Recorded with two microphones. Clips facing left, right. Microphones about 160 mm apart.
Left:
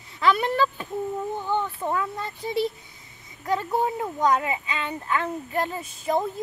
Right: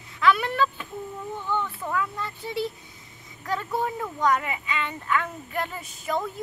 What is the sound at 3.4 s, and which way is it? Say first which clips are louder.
Speech: left 3 dB; 25° left (ahead or behind).